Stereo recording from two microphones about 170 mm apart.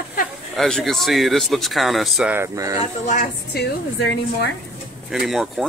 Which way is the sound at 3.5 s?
80° left.